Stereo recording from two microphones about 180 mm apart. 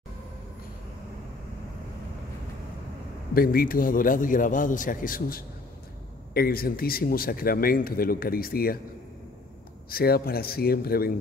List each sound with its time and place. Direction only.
3.3 s a man's voice: 55° left (ahead or behind)
9.8 s speech: 55° left (ahead or behind)